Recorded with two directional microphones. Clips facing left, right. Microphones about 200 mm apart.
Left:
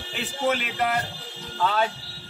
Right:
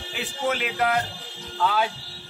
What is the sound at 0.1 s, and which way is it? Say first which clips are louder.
A man's voice: left 2 dB; centre (ahead or behind).